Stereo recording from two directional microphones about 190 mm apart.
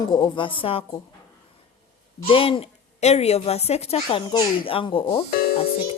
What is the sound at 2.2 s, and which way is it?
A woman's voice, 30° left (ahead or behind).